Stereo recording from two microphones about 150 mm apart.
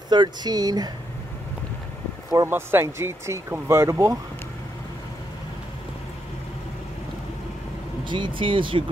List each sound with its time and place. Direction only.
0.1 s speech: 30° right (ahead or behind)
2.3 s speech: 15° right (ahead or behind)
8.0 s vehicle: 30° right (ahead or behind)
8.4 s speech: 35° right (ahead or behind)